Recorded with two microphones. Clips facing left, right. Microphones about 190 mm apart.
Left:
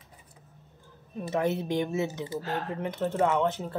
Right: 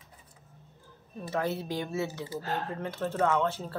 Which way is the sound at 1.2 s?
20° left (ahead or behind).